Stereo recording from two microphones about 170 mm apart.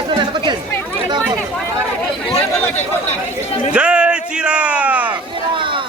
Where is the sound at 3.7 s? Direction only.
5° right (ahead or behind).